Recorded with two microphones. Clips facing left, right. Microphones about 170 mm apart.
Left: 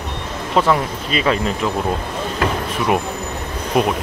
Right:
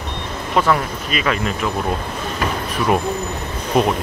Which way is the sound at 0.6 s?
25° left (ahead or behind).